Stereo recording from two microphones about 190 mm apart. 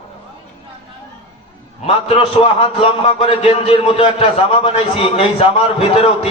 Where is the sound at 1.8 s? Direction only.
30° left (ahead or behind).